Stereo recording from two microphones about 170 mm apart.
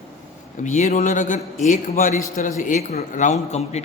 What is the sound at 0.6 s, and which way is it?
Speech, 45° left (ahead or behind).